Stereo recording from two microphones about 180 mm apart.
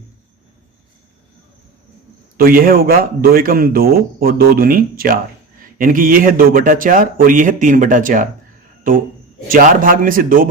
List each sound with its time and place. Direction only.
2.4 s a man's voice: 55° right (ahead or behind)